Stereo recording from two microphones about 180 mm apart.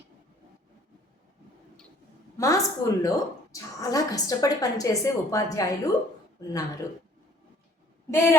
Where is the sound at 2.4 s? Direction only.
20° left (ahead or behind).